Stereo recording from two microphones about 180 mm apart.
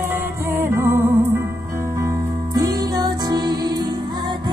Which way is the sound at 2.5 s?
20° right (ahead or behind).